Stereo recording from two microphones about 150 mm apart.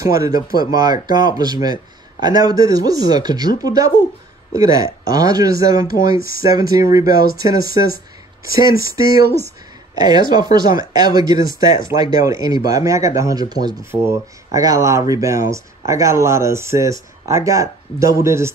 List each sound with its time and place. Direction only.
0.0 s speech: 20° right (ahead or behind)